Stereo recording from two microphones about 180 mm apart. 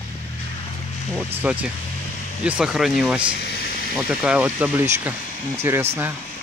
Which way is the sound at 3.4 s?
65° left (ahead or behind).